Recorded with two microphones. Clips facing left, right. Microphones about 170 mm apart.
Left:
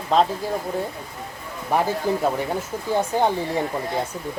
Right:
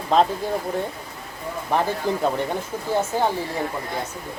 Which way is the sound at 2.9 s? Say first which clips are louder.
Left 1 dB; 15° left (ahead or behind).